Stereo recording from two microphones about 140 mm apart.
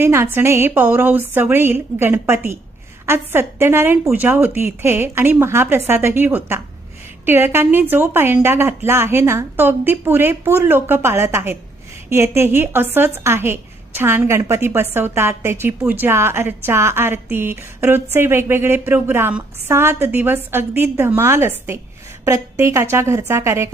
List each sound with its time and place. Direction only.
0.0 s a woman's voice: 20° right (ahead or behind)